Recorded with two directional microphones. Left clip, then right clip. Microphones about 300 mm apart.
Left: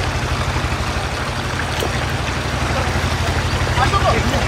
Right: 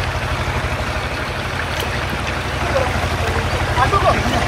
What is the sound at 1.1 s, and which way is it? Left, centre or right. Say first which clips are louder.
Stream: even; left.